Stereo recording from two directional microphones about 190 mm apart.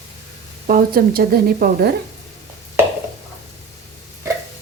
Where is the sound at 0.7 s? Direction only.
50° right (ahead or behind).